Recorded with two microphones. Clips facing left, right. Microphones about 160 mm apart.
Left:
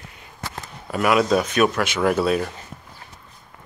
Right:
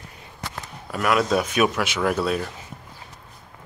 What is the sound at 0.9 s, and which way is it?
Speech, 5° left (ahead or behind).